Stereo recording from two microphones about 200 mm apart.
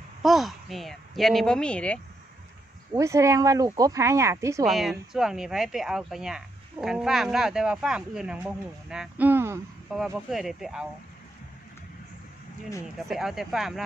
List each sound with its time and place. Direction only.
0.2 s speech: centre (ahead or behind)
2.9 s speech: 15° right (ahead or behind)
4.6 s speech: centre (ahead or behind)
12.8 s speech: centre (ahead or behind)